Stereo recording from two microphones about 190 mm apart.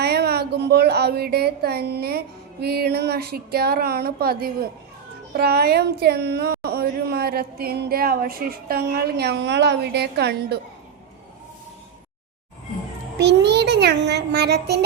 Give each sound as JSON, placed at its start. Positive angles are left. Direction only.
{"t": 0.0, "sound": "speech", "side_deg": -60}
{"t": 13.1, "sound": "speech", "side_deg": -60}